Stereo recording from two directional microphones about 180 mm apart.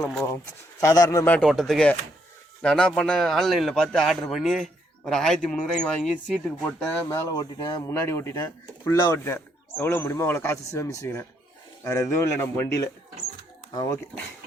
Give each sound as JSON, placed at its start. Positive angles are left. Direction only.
{"t": 0.8, "sound": "a man's voice", "side_deg": 20}
{"t": 1.2, "sound": "a man's voice", "side_deg": 5}